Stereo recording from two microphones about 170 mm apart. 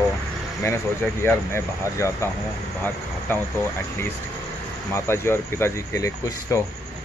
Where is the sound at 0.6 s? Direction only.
15° left (ahead or behind).